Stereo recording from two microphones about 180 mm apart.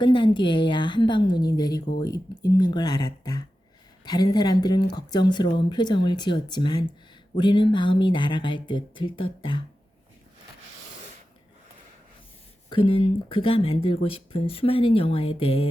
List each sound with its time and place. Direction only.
0.0 s a woman's voice: 25° left (ahead or behind)
12.7 s speech: 30° left (ahead or behind)